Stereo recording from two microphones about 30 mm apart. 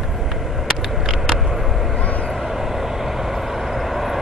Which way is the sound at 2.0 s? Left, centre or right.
Left.